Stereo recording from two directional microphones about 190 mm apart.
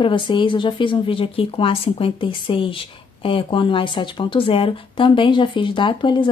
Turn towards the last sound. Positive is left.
turn(degrees=25)  # may be behind; listen again after turning